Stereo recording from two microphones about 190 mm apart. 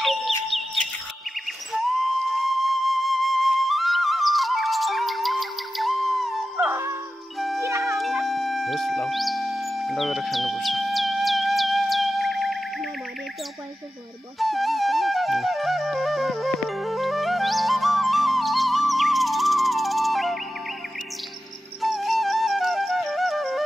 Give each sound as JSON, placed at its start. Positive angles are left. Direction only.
{"t": 0.0, "sound": "a sound", "side_deg": 0}
{"t": 1.7, "sound": "flute", "side_deg": 0}
{"t": 6.5, "sound": "dog", "side_deg": -15}
{"t": 7.3, "sound": "music", "side_deg": 0}
{"t": 7.6, "sound": "music", "side_deg": -15}
{"t": 8.0, "sound": "music", "side_deg": 0}
{"t": 14.4, "sound": "music", "side_deg": 0}
{"t": 21.8, "sound": "music", "side_deg": 0}